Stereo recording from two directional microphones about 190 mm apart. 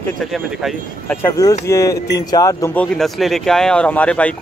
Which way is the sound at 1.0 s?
10° left (ahead or behind).